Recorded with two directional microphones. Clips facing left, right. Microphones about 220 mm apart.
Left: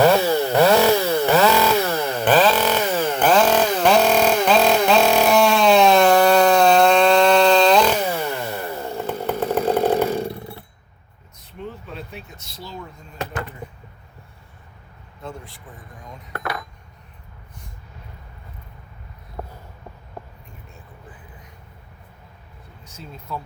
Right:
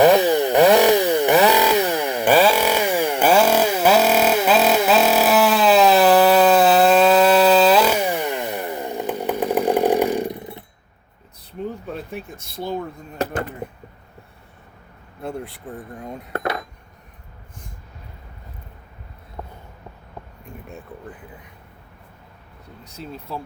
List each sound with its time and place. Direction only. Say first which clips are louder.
0.0 s chainsaw: right 2 dB; 15° right (ahead or behind)
11.9 s speech: right 5 dB; 50° right (ahead or behind)
15.2 s speech: right 6 dB; 65° right (ahead or behind)
22.8 s speech: right 5 dB; 35° right (ahead or behind)